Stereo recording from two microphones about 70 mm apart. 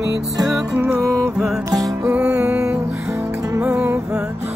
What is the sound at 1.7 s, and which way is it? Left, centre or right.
Music, right.